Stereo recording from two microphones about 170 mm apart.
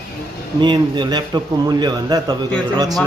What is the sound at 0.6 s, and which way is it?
A man's voice, 25° right (ahead or behind).